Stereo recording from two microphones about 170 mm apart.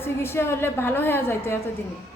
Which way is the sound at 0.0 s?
15° left (ahead or behind).